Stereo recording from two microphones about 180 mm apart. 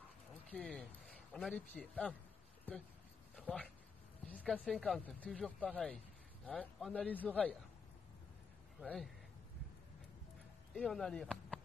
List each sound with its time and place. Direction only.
0.5 s speech: 5° left (ahead or behind)
3.3 s a man's voice: 5° left (ahead or behind)
8.8 s speech: 5° left (ahead or behind)
10.7 s speech: 5° left (ahead or behind)